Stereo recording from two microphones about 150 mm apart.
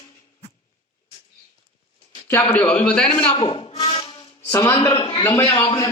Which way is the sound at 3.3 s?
40° left (ahead or behind).